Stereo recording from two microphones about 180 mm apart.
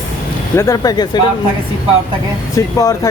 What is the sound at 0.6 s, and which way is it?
Speech, 20° left (ahead or behind).